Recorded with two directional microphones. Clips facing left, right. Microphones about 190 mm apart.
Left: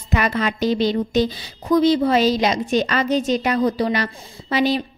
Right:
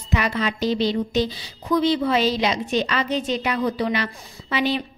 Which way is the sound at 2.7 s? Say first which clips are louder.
Left 4 dB; 45° left (ahead or behind).